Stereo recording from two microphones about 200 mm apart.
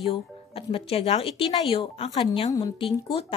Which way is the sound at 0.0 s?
30° left (ahead or behind).